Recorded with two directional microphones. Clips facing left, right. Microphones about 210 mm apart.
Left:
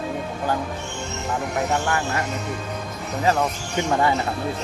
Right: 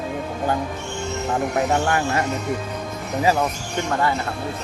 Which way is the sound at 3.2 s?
5° right (ahead or behind).